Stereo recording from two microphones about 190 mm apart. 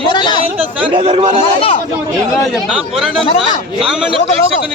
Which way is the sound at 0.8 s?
25° right (ahead or behind).